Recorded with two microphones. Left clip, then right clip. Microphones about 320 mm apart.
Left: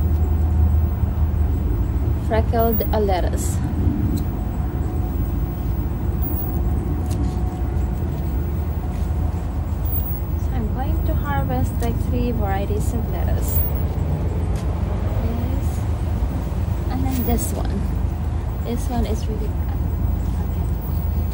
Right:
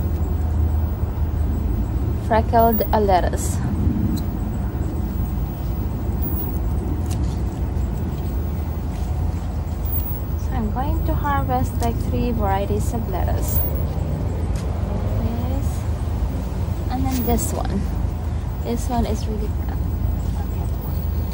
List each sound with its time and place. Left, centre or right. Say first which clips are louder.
2.3 s a woman's voice: right 4 dB; right
11.2 s vehicle: right 4 dB; centre
12.2 s a woman's voice: right 3 dB; right
18.7 s speech: right 3 dB; centre